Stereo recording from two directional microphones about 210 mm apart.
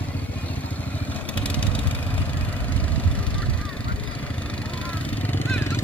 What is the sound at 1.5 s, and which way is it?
Vehicle, 5° left (ahead or behind).